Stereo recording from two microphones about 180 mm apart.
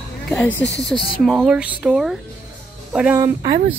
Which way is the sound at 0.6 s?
70° left (ahead or behind).